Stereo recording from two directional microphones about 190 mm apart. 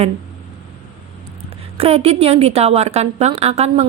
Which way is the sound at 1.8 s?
30° right (ahead or behind).